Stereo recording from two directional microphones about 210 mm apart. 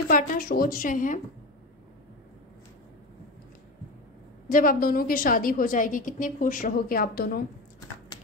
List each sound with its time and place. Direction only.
0.1 s a woman's voice: 45° left (ahead or behind)
4.5 s a woman's voice: 40° left (ahead or behind)